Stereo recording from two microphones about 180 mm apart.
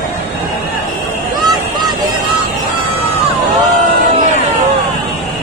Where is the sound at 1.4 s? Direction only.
25° right (ahead or behind).